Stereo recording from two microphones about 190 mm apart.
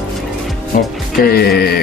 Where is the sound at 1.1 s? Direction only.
55° left (ahead or behind).